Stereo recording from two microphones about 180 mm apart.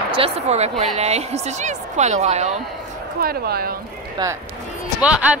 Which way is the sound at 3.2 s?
60° right (ahead or behind).